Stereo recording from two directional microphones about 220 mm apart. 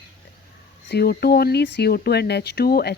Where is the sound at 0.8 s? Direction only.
45° left (ahead or behind).